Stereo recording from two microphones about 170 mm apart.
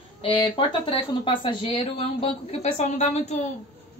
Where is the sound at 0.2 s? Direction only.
30° left (ahead or behind).